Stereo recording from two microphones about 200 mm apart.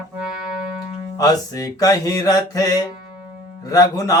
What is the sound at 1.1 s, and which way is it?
Mantra, 20° left (ahead or behind).